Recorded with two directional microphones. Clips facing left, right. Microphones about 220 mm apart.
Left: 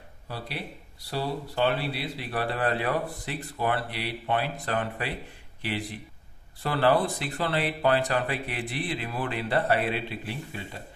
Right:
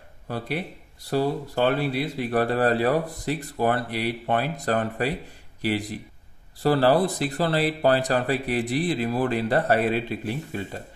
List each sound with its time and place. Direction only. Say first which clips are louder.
1.1 s speech: right 6 dB; 45° right (ahead or behind)